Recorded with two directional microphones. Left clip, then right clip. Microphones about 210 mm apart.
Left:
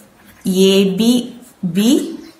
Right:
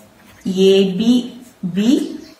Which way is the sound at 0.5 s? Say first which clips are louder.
Even; 45° left (ahead or behind).